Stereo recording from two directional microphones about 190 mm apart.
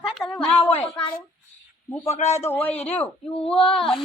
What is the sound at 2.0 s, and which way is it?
Speech, 35° left (ahead or behind).